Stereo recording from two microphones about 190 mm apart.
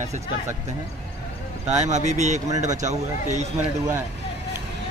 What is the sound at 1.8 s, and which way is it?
Speech, 35° right (ahead or behind).